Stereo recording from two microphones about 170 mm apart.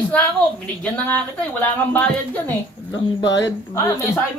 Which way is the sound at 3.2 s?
90° left.